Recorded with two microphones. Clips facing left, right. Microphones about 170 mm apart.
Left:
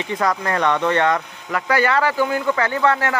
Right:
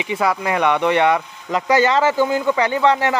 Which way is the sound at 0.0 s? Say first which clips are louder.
Right 1 dB; 10° right (ahead or behind).